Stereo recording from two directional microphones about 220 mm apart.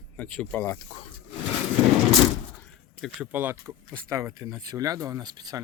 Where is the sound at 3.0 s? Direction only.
5° right (ahead or behind).